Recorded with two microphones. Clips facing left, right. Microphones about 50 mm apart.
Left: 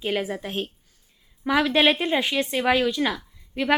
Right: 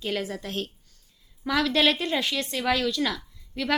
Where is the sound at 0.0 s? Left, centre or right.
Centre.